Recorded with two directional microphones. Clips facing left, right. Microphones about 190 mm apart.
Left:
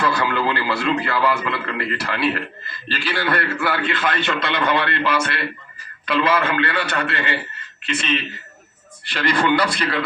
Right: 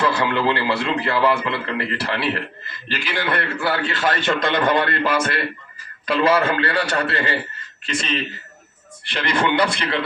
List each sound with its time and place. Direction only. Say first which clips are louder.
0.0 s a man's voice: right 1 dB; 25° right (ahead or behind)
2.9 s a man's voice: left 1 dB; 15° right (ahead or behind)
3.6 s a man's voice: even; 35° right (ahead or behind)
9.1 s a man's voice: left 1 dB; 20° right (ahead or behind)